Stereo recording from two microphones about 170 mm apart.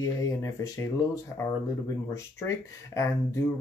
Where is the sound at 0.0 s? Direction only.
20° left (ahead or behind).